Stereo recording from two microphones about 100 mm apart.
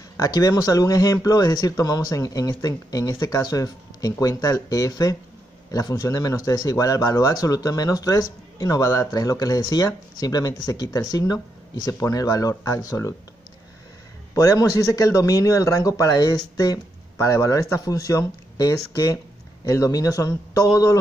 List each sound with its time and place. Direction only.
0.2 s speech: 40° left (ahead or behind)
14.3 s speech: 35° left (ahead or behind)